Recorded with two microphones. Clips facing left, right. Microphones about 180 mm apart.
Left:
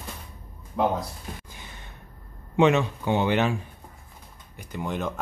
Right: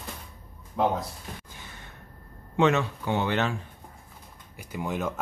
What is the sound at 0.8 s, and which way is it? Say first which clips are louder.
Speech: left 1 dB; centre (ahead or behind).